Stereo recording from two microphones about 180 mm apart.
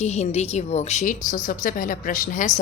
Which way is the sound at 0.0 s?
40° left (ahead or behind).